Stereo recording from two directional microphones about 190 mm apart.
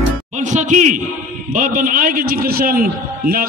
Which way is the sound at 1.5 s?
45° right (ahead or behind).